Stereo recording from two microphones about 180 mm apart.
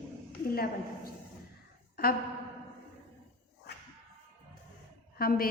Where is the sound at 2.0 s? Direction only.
55° left (ahead or behind).